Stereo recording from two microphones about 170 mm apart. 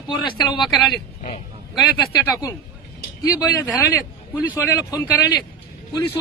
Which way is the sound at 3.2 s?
20° left (ahead or behind).